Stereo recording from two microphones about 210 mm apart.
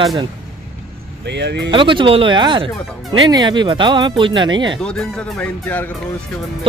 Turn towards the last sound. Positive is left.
turn(degrees=10)  # may be behind; listen again after turning